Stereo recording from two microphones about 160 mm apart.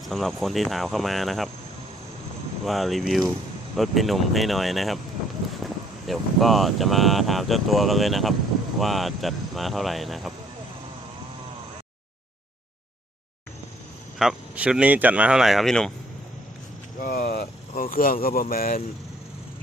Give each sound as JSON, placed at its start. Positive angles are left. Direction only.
{"t": 0.1, "sound": "speech", "side_deg": 0}
{"t": 2.6, "sound": "speech", "side_deg": 0}
{"t": 14.2, "sound": "speech", "side_deg": -5}
{"t": 17.0, "sound": "speech", "side_deg": 70}